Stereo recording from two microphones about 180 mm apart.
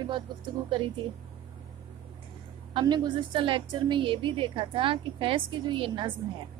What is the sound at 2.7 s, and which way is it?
A woman's voice, 25° right (ahead or behind).